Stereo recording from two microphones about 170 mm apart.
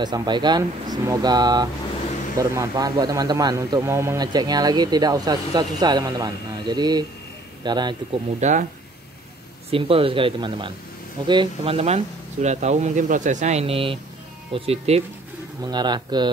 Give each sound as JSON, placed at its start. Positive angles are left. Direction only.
{"t": 0.0, "sound": "a man's voice", "side_deg": -25}
{"t": 8.4, "sound": "speech", "side_deg": -45}
{"t": 9.7, "sound": "speech", "side_deg": -35}
{"t": 15.6, "sound": "a man's voice", "side_deg": -25}